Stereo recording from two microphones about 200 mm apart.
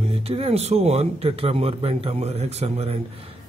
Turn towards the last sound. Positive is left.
turn(degrees=-30)  # may be behind; listen again after turning